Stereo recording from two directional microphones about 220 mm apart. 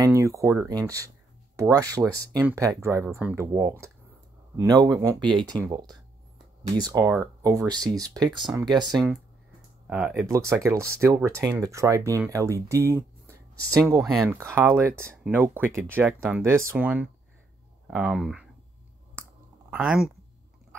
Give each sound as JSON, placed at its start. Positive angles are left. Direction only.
{"t": 0.0, "sound": "speech", "side_deg": -15}
{"t": 9.8, "sound": "speech", "side_deg": -5}
{"t": 19.7, "sound": "speech", "side_deg": -5}